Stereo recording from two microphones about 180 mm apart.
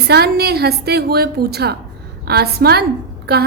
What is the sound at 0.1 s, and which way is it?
A woman's voice, 60° right (ahead or behind).